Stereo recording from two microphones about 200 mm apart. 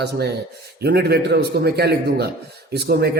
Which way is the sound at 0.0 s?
55° right (ahead or behind).